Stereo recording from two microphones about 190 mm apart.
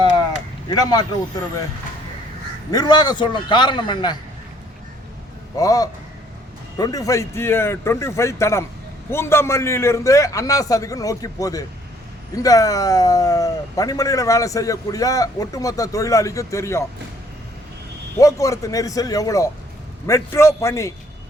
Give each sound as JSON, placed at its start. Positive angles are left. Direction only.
{"t": 0.7, "sound": "a man's voice", "side_deg": 20}
{"t": 2.6, "sound": "a man's voice", "side_deg": 20}
{"t": 5.5, "sound": "a man's voice", "side_deg": 20}
{"t": 18.2, "sound": "speech", "side_deg": 15}